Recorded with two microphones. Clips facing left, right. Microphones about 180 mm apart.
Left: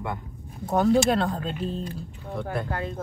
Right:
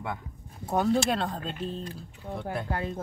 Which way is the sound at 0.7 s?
Centre (ahead or behind).